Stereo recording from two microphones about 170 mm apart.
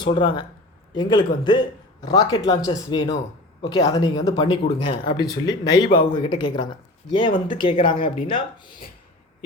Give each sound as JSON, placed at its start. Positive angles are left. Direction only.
{"t": 0.0, "sound": "speech", "side_deg": 30}